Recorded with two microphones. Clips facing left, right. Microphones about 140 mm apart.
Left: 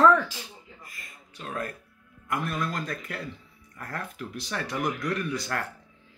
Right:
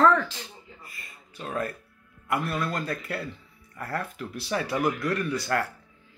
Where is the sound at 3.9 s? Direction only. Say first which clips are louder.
Right 3 dB; 5° right (ahead or behind).